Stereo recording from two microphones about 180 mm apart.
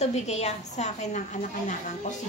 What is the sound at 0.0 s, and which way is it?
A woman's voice, 40° left (ahead or behind).